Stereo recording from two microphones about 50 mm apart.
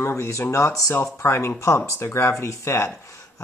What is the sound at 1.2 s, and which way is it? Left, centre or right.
Speech, left.